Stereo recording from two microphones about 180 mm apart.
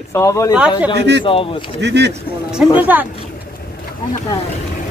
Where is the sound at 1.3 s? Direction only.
30° left (ahead or behind).